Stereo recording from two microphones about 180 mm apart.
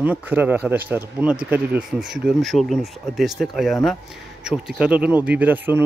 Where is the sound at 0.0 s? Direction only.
10° right (ahead or behind).